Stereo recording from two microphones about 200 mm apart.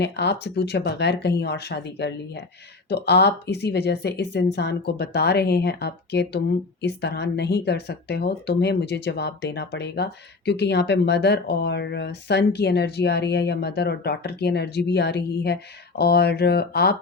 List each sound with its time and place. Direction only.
0.0 s speech: 60° left (ahead or behind)